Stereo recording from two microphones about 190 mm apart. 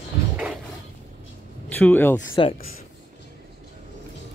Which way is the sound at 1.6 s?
10° left (ahead or behind).